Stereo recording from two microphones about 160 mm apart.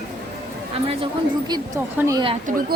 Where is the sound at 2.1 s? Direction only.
25° right (ahead or behind).